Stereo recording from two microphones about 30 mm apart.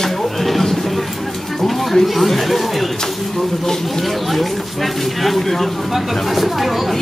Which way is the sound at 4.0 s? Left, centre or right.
Centre.